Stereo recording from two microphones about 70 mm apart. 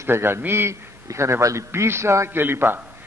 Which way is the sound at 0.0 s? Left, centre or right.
Right.